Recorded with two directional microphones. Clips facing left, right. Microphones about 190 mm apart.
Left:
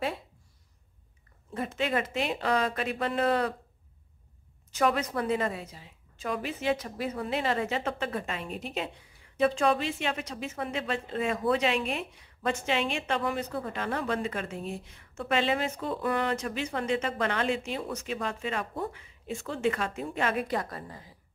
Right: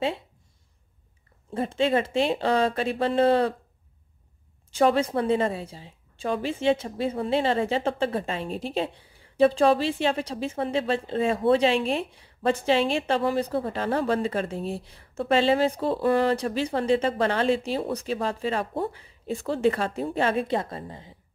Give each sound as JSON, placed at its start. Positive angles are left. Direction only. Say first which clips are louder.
{"t": 1.5, "sound": "speech", "louder": "right 6 dB", "side_deg": -30}
{"t": 4.6, "sound": "a woman's voice", "louder": "right 6 dB", "side_deg": -30}